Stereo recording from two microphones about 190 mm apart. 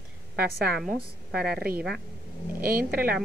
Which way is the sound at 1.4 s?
55° right (ahead or behind).